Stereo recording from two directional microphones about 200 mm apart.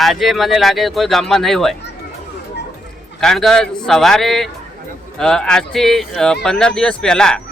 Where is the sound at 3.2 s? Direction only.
Centre (ahead or behind).